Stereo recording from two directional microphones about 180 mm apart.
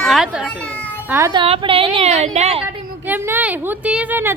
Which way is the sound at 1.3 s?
25° right (ahead or behind).